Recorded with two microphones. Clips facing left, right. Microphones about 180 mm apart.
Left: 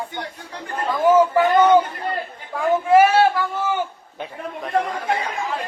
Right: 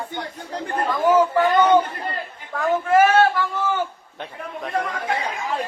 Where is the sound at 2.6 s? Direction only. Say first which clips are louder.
Left 2 dB; 10° left (ahead or behind).